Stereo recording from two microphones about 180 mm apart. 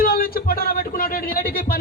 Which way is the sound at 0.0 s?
55° left (ahead or behind).